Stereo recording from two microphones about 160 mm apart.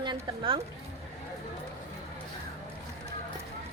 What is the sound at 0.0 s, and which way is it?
Speech, 30° right (ahead or behind).